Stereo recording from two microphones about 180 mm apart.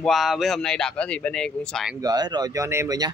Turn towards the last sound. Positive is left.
turn(degrees=-15)  # may be behind; listen again after turning